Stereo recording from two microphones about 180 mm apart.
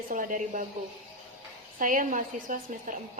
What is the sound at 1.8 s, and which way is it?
A woman's voice, 45° right (ahead or behind).